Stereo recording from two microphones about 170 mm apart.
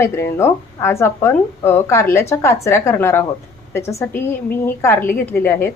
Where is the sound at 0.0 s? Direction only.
15° left (ahead or behind).